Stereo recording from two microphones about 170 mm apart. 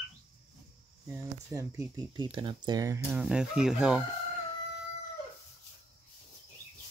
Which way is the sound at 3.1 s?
5° right (ahead or behind).